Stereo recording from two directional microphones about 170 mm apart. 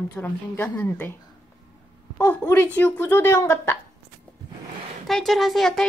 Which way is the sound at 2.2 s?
10° left (ahead or behind).